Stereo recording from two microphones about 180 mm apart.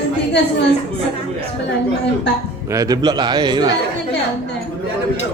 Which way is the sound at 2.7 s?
20° right (ahead or behind).